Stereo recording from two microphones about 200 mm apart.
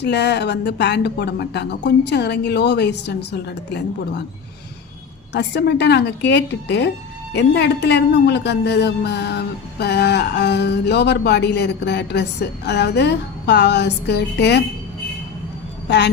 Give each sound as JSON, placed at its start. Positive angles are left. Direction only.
{"t": 0.0, "sound": "speech", "side_deg": 60}
{"t": 5.3, "sound": "speech", "side_deg": 55}